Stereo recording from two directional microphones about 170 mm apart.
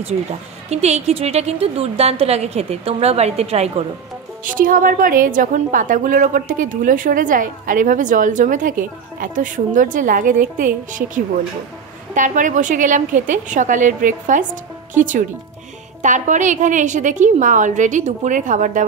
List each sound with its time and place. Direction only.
0.7 s a woman's voice: 40° right (ahead or behind)
4.5 s a woman's voice: 55° right (ahead or behind)